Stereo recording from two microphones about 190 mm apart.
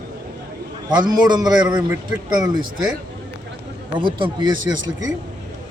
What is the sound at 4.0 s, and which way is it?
A man's voice, 25° right (ahead or behind).